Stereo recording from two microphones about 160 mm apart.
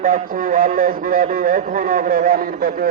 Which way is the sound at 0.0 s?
55° right (ahead or behind).